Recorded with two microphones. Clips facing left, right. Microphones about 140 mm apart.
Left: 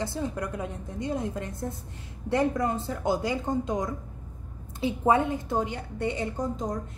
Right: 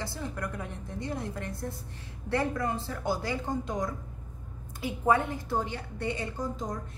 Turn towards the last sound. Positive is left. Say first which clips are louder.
# left 4 dB
turn(degrees=20)  # may be behind; listen again after turning